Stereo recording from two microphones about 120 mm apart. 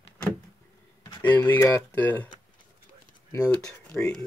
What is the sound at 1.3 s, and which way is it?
Speech, 25° left (ahead or behind).